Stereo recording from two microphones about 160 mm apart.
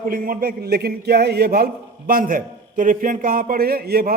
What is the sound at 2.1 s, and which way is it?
A man's voice, 60° right (ahead or behind).